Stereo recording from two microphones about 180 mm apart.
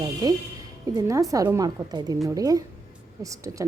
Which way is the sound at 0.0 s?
25° right (ahead or behind).